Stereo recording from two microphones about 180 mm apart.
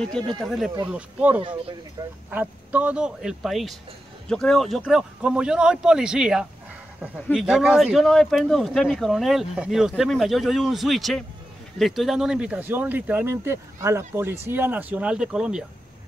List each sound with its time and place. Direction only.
0.4 s speech: centre (ahead or behind)
2.0 s speech: 20° right (ahead or behind)
2.3 s speech: 10° right (ahead or behind)